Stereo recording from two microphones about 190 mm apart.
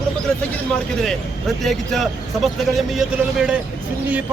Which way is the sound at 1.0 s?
Centre (ahead or behind).